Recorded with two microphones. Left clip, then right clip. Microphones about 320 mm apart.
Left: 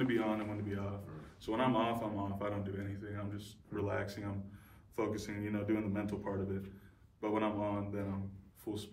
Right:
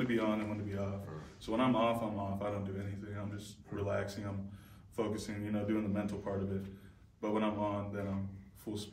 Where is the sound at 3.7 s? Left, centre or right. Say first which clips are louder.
Right 1 dB; centre.